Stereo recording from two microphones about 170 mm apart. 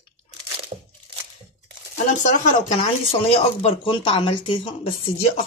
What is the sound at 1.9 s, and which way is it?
Speech, 45° left (ahead or behind).